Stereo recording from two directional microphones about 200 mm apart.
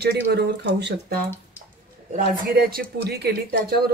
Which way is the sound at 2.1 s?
45° right (ahead or behind).